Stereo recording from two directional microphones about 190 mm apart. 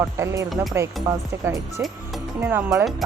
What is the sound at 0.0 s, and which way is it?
Speech, 15° right (ahead or behind).